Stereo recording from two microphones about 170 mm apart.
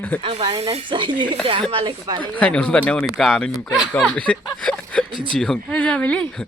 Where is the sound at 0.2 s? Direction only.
30° right (ahead or behind).